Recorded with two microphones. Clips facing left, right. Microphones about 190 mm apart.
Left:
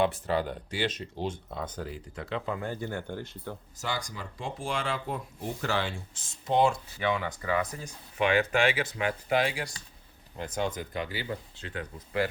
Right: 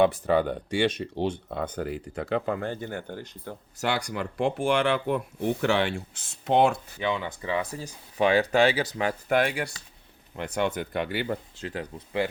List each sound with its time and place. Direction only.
0.0 s speech: 60° right (ahead or behind)
2.6 s speech: 20° right (ahead or behind)
3.8 s speech: 70° right (ahead or behind)
7.1 s speech: 25° right (ahead or behind)
9.3 s speech: 55° right (ahead or behind)
11.5 s speech: 40° right (ahead or behind)